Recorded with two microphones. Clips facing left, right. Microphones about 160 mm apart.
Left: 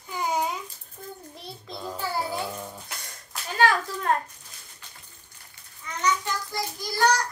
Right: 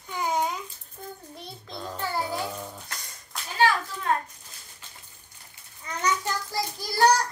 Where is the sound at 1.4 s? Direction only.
Centre (ahead or behind).